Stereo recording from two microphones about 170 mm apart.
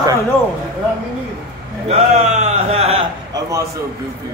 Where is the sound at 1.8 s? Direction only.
40° right (ahead or behind).